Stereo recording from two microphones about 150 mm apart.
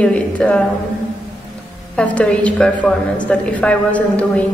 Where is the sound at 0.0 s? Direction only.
5° left (ahead or behind).